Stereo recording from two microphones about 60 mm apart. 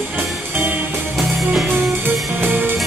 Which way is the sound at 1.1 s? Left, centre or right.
Centre.